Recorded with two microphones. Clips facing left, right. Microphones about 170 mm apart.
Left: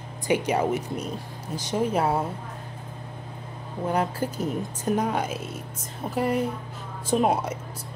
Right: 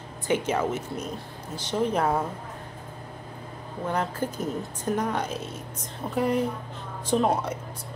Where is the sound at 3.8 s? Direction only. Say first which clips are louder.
Left 2 dB; 10° left (ahead or behind).